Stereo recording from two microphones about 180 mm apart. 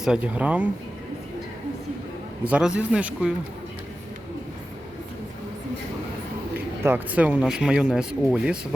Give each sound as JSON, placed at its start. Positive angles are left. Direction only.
{"t": 0.0, "sound": "speech", "side_deg": -5}
{"t": 2.4, "sound": "speech", "side_deg": -5}
{"t": 6.8, "sound": "speech", "side_deg": -10}